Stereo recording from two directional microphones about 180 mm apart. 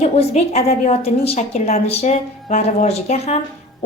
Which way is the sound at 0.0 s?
35° left (ahead or behind).